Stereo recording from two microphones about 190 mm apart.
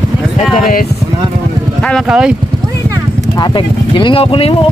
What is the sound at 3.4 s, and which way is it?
Speech, 25° left (ahead or behind).